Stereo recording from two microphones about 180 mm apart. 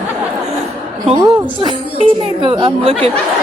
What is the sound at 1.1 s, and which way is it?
A woman's voice, 25° right (ahead or behind).